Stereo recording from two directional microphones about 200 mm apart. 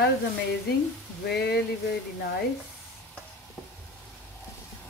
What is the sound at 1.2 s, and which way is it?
Speech, 55° left (ahead or behind).